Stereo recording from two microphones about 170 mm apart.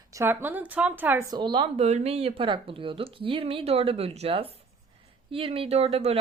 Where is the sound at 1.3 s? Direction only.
30° right (ahead or behind).